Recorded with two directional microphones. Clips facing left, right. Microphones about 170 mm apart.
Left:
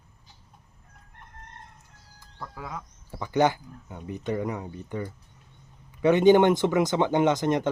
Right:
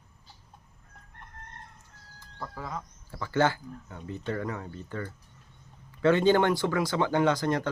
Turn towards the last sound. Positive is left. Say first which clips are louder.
# left 3 dB
turn(degrees=20)  # may be behind; listen again after turning